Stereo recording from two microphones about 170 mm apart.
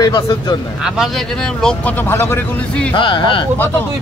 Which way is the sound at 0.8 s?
5° right (ahead or behind).